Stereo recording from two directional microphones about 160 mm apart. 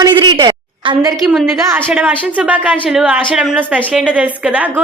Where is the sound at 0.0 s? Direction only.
30° right (ahead or behind).